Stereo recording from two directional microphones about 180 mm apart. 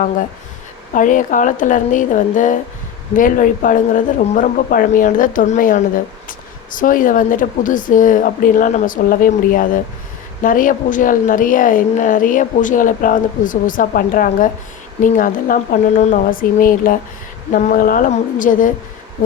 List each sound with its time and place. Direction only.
0.9 s a woman's voice: 45° left (ahead or behind)